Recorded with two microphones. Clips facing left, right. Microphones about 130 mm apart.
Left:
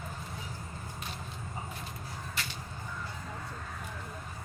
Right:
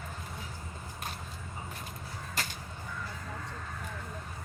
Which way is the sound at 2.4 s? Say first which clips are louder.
Right 4 dB; 40° right (ahead or behind).